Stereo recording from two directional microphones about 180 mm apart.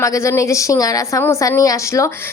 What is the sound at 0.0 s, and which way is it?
A woman's voice, 15° left (ahead or behind).